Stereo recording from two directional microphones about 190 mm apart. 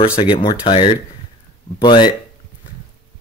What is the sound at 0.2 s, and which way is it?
A man's voice, 25° left (ahead or behind).